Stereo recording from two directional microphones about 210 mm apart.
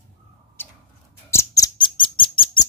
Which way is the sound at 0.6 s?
10° left (ahead or behind).